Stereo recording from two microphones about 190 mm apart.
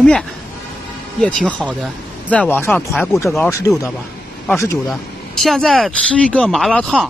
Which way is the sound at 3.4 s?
15° left (ahead or behind).